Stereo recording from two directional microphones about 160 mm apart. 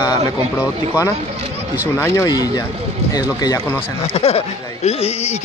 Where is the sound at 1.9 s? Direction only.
20° left (ahead or behind).